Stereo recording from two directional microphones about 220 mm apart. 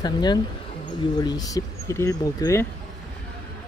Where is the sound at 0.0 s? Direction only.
20° left (ahead or behind).